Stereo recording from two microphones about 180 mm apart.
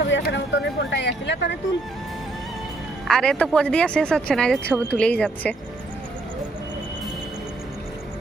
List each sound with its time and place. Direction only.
0.1 s speech: 80° left
3.1 s speech: 5° left (ahead or behind)